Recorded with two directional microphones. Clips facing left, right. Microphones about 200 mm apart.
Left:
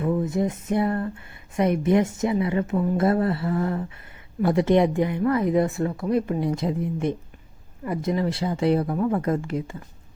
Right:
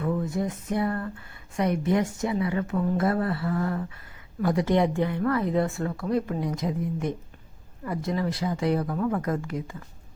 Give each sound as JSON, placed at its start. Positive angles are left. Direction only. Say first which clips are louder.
{"t": 0.0, "sound": "speech", "louder": "left 4 dB", "side_deg": 20}